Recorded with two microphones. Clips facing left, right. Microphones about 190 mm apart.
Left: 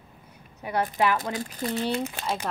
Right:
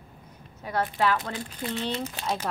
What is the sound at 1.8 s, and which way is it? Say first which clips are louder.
Speech: left 3 dB; 10° left (ahead or behind).